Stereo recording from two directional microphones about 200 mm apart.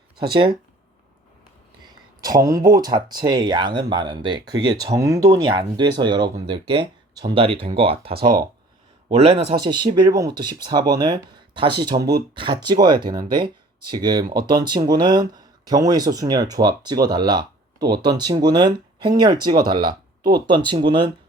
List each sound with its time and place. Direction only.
0.2 s speech: 25° right (ahead or behind)
1.8 s a sound: 20° right (ahead or behind)
2.7 s speech: 20° right (ahead or behind)
9.6 s speech: 20° right (ahead or behind)